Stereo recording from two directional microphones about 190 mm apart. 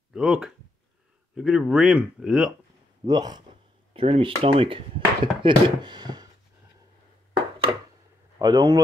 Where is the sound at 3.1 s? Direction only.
20° right (ahead or behind).